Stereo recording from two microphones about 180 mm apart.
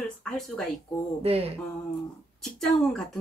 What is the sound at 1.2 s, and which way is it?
Speech, 35° right (ahead or behind).